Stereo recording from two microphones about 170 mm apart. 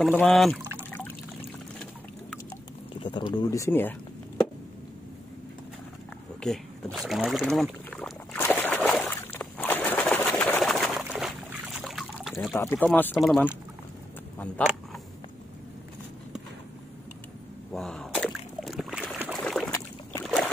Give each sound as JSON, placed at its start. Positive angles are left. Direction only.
{"t": 0.0, "sound": "speech", "side_deg": 5}
{"t": 0.8, "sound": "pour", "side_deg": 10}
{"t": 2.9, "sound": "speech", "side_deg": 30}
{"t": 6.4, "sound": "a sound", "side_deg": 0}
{"t": 12.5, "sound": "speech", "side_deg": 10}
{"t": 17.7, "sound": "a sound", "side_deg": 0}
{"t": 19.4, "sound": "boat", "side_deg": 0}
{"t": 19.7, "sound": "boat", "side_deg": 20}
{"t": 20.2, "sound": "boat", "side_deg": 5}